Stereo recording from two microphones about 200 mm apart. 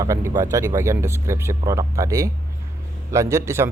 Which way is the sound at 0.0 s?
15° right (ahead or behind).